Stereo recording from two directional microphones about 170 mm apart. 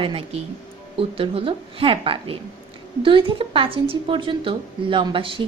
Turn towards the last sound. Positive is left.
turn(degrees=-30)  # may be behind; listen again after turning